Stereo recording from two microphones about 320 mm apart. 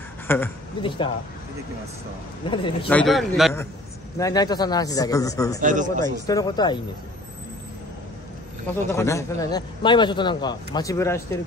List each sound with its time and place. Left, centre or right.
0.3 s a man's voice: centre
2.5 s a man's voice: centre
2.9 s a man's voice: centre
4.2 s a man's voice: centre
5.6 s speech: right
6.2 s a man's voice: centre
8.9 s a man's voice: centre